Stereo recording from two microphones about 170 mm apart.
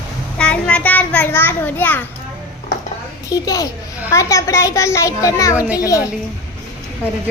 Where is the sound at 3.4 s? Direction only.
20° left (ahead or behind).